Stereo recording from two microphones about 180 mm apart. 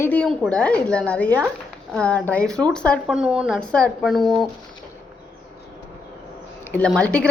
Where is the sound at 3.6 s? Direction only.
5° left (ahead or behind).